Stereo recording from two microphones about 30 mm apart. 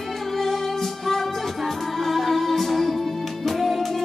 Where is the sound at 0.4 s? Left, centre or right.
Centre.